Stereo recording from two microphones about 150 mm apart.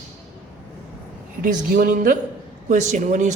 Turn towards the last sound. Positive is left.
turn(degrees=-55)  # may be behind; listen again after turning